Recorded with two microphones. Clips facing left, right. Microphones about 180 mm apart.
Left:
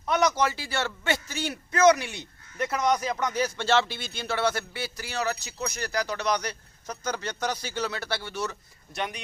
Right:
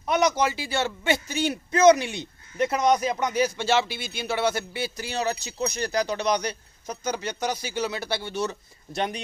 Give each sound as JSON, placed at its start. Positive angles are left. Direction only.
{"t": 0.0, "sound": "a man's voice", "side_deg": -15}